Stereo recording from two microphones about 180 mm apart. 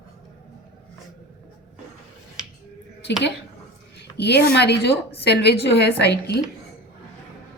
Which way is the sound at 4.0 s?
65° left (ahead or behind).